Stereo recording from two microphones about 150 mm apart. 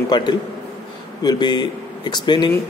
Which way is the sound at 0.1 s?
30° left (ahead or behind).